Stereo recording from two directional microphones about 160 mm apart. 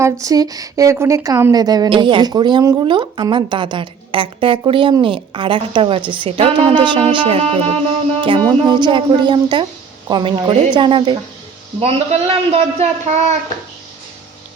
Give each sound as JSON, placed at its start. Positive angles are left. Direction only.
{"t": 0.0, "sound": "a woman's voice", "side_deg": -20}